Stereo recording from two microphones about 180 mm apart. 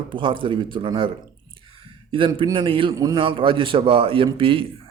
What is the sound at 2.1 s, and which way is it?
Speech, 30° right (ahead or behind).